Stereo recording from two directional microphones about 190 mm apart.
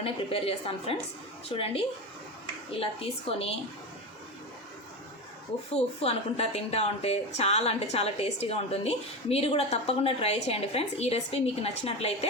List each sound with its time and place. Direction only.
0.0 s a woman's voice: 30° left (ahead or behind)
5.7 s a woman's voice: 30° left (ahead or behind)